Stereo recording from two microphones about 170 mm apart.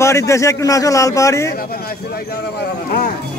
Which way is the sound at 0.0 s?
15° left (ahead or behind).